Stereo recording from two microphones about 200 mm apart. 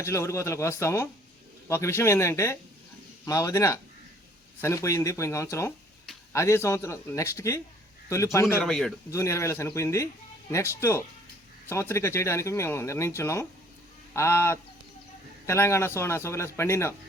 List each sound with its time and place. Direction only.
0.0 s speech: 15° left (ahead or behind)
8.6 s a man's voice: centre (ahead or behind)
9.0 s speech: 15° left (ahead or behind)